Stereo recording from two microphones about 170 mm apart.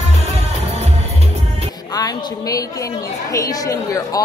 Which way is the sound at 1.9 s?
20° left (ahead or behind).